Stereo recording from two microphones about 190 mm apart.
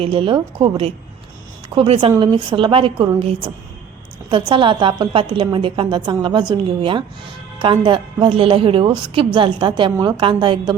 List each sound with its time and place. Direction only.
0.0 s a woman's voice: 30° right (ahead or behind)